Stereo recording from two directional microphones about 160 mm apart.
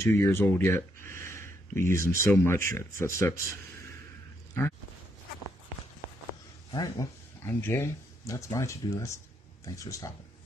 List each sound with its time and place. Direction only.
0.0 s speech: 15° left (ahead or behind)
6.7 s speech: 25° left (ahead or behind)